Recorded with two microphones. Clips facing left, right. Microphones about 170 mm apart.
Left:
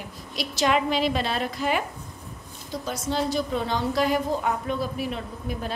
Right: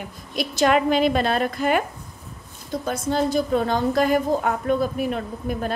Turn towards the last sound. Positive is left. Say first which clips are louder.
# right 5 dB
turn(degrees=-50)  # may be behind; listen again after turning